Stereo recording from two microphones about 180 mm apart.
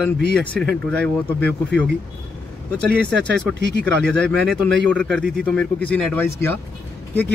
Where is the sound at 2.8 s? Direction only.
65° right (ahead or behind).